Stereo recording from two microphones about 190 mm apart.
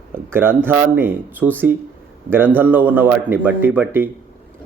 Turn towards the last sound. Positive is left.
turn(degrees=-10)  # may be behind; listen again after turning